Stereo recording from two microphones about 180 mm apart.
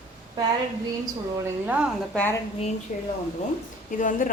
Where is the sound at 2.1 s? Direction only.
10° left (ahead or behind).